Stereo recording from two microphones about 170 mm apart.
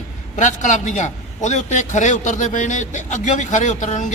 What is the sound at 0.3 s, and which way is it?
A man's voice, 45° left (ahead or behind).